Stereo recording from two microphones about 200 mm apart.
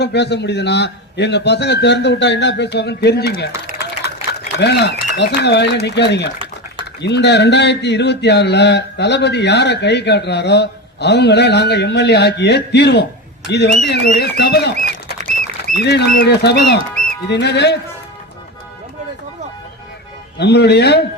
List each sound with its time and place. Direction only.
0.0 s speech: 60° left (ahead or behind)
4.5 s speech: 60° left (ahead or behind)
20.4 s speech: 55° left (ahead or behind)